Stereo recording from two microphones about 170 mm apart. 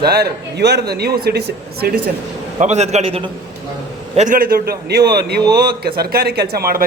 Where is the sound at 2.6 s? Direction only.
40° right (ahead or behind).